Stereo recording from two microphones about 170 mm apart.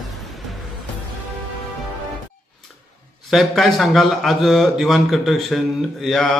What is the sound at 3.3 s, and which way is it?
A man's voice, centre (ahead or behind).